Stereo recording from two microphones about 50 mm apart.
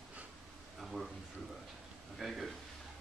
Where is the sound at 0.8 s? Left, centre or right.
Centre.